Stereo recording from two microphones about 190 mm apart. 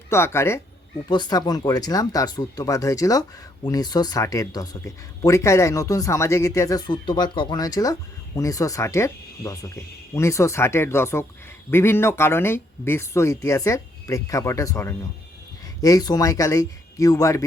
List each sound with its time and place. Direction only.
0.1 s speech: 15° left (ahead or behind)